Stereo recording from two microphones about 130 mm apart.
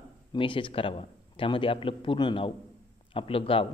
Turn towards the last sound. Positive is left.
turn(degrees=45)  # may be behind; listen again after turning